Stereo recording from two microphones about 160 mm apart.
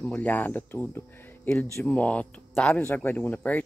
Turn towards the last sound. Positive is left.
turn(degrees=10)  # may be behind; listen again after turning